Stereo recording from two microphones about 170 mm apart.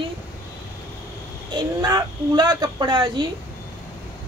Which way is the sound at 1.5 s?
25° right (ahead or behind).